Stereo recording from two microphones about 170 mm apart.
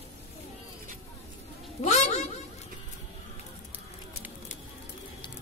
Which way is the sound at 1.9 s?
45° left (ahead or behind).